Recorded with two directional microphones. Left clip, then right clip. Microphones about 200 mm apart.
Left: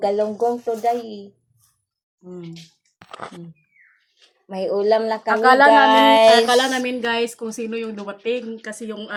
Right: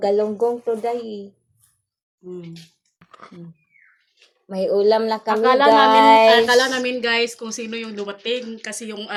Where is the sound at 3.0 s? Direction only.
45° left (ahead or behind).